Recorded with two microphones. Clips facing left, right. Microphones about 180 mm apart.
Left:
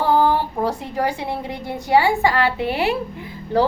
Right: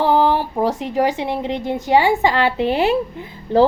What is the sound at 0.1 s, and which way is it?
A woman's voice, 20° right (ahead or behind).